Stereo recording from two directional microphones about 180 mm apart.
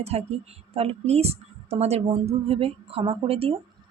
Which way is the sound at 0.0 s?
35° right (ahead or behind).